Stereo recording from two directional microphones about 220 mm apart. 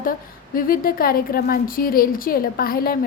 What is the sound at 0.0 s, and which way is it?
A woman's voice, 40° left (ahead or behind).